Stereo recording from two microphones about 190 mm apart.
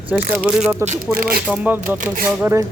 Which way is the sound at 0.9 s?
50° right (ahead or behind).